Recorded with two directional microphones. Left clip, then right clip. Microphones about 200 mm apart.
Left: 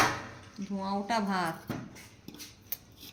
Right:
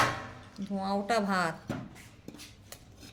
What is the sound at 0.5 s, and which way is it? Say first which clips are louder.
A woman's voice: right 2 dB; 60° right (ahead or behind).